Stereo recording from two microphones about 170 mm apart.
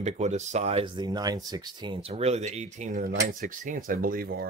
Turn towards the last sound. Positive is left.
turn(degrees=-60)  # may be behind; listen again after turning